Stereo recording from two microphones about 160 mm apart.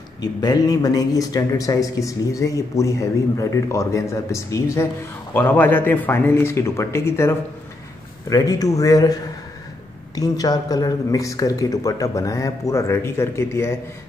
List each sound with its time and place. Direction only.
0.2 s a man's voice: 25° left (ahead or behind)